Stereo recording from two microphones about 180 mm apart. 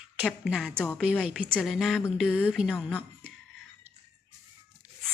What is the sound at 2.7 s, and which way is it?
Speech, 10° left (ahead or behind).